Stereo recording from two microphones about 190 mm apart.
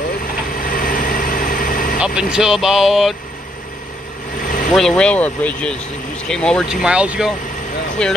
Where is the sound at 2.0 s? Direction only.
5° right (ahead or behind).